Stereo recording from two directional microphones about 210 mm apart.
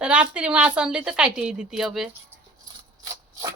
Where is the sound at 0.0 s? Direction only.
5° right (ahead or behind).